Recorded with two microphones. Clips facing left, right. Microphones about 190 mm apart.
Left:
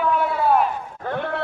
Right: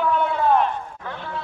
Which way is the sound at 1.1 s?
60° left (ahead or behind).